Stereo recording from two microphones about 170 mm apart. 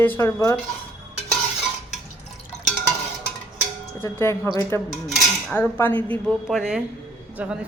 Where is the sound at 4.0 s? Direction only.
15° left (ahead or behind).